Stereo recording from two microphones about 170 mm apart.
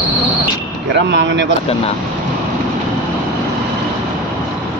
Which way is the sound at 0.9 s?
90° right.